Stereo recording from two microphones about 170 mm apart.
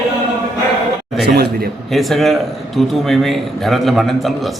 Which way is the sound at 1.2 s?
65° right (ahead or behind).